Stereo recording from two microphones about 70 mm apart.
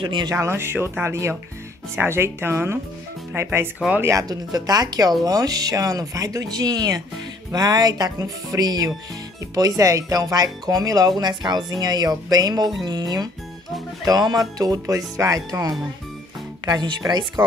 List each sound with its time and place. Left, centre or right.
0.3 s speech: right
4.0 s speech: right
14.6 s speech: right
16.6 s speech: right